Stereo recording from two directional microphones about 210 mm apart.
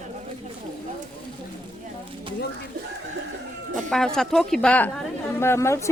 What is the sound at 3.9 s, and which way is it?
A woman's voice, centre (ahead or behind).